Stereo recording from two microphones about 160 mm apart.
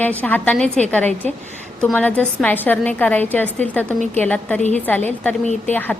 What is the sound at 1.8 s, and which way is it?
A woman's voice, 5° left (ahead or behind).